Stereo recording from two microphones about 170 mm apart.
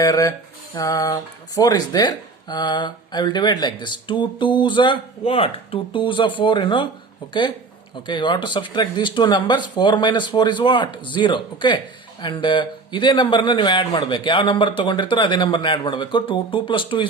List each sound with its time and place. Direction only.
0.0 s speech: 20° left (ahead or behind)
8.0 s speech: 25° left (ahead or behind)